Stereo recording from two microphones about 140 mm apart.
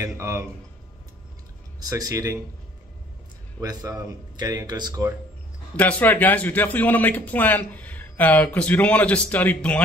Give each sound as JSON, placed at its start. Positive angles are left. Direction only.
{"t": 0.0, "sound": "a man's voice", "side_deg": -20}
{"t": 1.8, "sound": "a man's voice", "side_deg": -25}
{"t": 3.6, "sound": "a man's voice", "side_deg": -25}
{"t": 5.8, "sound": "a man's voice", "side_deg": 10}